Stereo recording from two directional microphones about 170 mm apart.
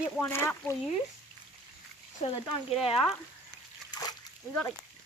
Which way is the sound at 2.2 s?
45° left (ahead or behind).